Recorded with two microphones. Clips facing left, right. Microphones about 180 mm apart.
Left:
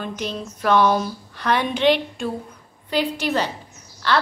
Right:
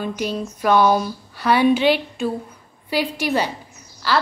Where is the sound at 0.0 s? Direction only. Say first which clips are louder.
Right 4 dB; 10° right (ahead or behind).